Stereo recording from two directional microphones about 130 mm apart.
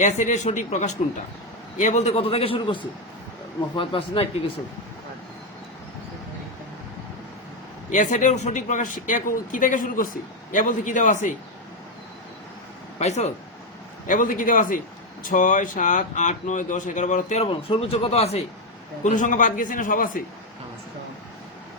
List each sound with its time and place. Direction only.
0.0 s speech: 65° left (ahead or behind); by 2.7 s 45° left (ahead or behind)
3.8 s speech: 40° left (ahead or behind)
7.9 s a man's voice: 70° left (ahead or behind)
13.0 s speech: 60° left (ahead or behind)
14.1 s a man's voice: 90° left; by 17.4 s 70° left (ahead or behind)
17.4 s speech: 50° left (ahead or behind)
19.0 s a man's voice: 75° left (ahead or behind); by 20.2 s 90° left